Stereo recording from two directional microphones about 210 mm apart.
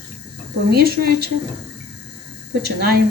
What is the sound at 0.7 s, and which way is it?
Speech, 45° right (ahead or behind).